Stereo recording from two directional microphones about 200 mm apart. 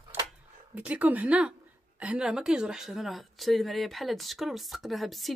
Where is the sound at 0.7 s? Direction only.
5° right (ahead or behind).